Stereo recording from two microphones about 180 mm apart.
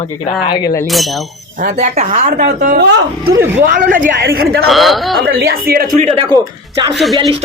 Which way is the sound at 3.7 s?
50° right (ahead or behind).